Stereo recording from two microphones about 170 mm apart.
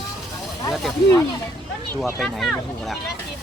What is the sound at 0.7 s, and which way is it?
Speech, centre (ahead or behind).